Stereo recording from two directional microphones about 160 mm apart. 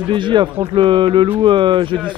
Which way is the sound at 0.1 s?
30° right (ahead or behind).